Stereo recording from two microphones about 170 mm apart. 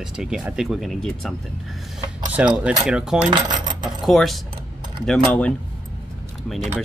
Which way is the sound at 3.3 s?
25° right (ahead or behind).